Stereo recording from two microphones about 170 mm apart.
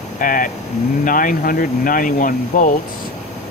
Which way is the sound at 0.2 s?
55° left (ahead or behind).